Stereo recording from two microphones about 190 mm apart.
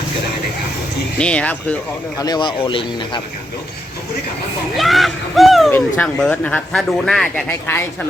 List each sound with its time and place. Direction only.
1.2 s speech: 5° left (ahead or behind)
2.1 s speech: 20° left (ahead or behind)
4.8 s speech: centre (ahead or behind)